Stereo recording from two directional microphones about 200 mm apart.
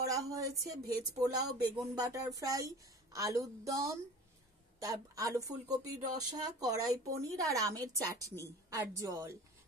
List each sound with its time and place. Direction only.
0.0 s a woman's voice: 15° right (ahead or behind)